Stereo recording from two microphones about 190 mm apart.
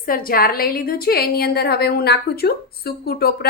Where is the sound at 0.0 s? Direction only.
50° left (ahead or behind).